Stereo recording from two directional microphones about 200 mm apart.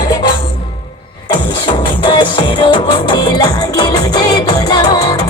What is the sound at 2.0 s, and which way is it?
Music, 25° left (ahead or behind).